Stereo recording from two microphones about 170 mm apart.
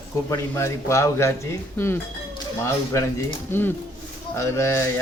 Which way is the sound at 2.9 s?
15° left (ahead or behind).